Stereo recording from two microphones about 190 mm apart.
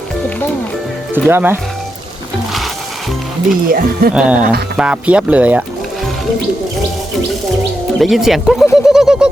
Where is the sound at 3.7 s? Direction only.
50° right (ahead or behind).